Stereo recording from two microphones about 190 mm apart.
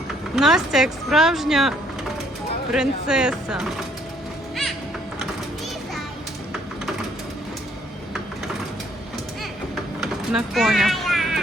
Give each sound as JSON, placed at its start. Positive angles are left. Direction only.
{"t": 0.3, "sound": "speech", "side_deg": 0}
{"t": 2.7, "sound": "speech", "side_deg": -5}
{"t": 10.0, "sound": "a sound", "side_deg": 0}